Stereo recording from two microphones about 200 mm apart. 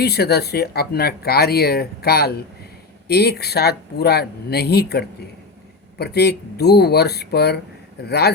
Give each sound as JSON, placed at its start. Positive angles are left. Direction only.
{"t": 0.0, "sound": "speech", "side_deg": 55}